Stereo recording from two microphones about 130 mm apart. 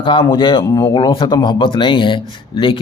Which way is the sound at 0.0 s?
40° left (ahead or behind).